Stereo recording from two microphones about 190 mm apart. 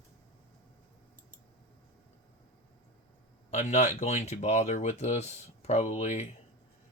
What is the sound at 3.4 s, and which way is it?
Speech, 35° left (ahead or behind).